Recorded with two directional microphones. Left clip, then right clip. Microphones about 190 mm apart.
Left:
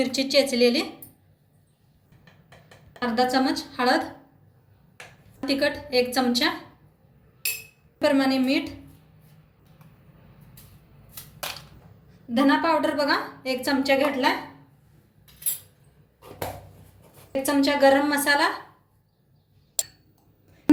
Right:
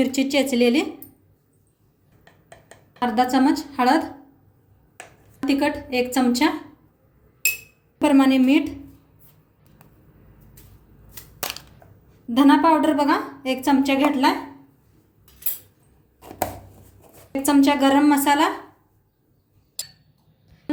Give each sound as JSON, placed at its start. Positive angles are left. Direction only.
{"t": 0.0, "sound": "a woman's voice", "side_deg": -55}
{"t": 3.0, "sound": "speech", "side_deg": -60}
{"t": 5.5, "sound": "speech", "side_deg": -60}
{"t": 8.0, "sound": "a woman's voice", "side_deg": -50}
{"t": 12.3, "sound": "a woman's voice", "side_deg": -55}
{"t": 17.4, "sound": "speech", "side_deg": -55}